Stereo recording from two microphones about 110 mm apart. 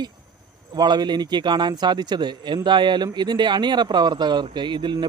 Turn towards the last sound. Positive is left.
turn(degrees=-45)  # may be behind; listen again after turning